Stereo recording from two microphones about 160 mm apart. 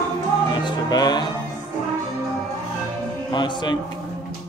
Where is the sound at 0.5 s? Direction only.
30° left (ahead or behind).